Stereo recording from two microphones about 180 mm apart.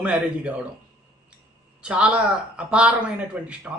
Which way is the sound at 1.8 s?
5° right (ahead or behind).